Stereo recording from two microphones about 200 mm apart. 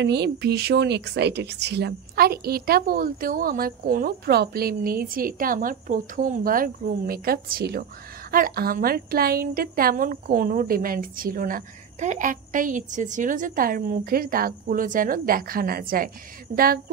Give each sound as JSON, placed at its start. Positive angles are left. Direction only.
{"t": 0.0, "sound": "a woman's voice", "side_deg": -55}